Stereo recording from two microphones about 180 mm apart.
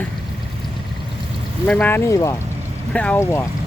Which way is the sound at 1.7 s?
10° left (ahead or behind).